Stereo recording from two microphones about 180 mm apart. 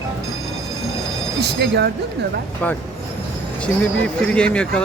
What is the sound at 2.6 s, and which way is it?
Speech, 10° left (ahead or behind).